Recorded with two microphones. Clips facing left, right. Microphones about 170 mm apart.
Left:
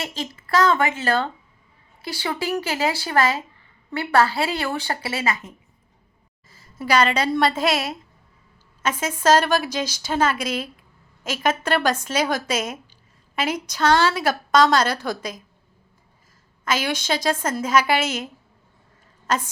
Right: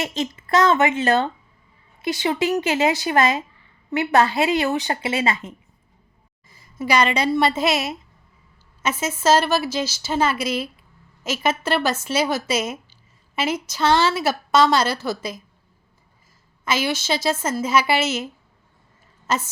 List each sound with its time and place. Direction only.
0.0 s speech: 20° right (ahead or behind)
6.5 s a woman's voice: 10° right (ahead or behind)
16.6 s a woman's voice: 10° right (ahead or behind)